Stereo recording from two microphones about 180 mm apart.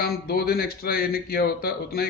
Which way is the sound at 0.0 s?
60° left (ahead or behind).